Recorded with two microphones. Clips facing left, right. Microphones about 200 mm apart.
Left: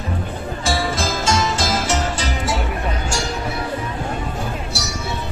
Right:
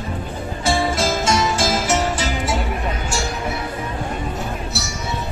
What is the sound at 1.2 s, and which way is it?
Music, 25° left (ahead or behind).